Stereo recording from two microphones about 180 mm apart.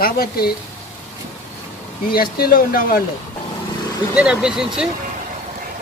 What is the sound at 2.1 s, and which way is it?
Speech, 55° left (ahead or behind).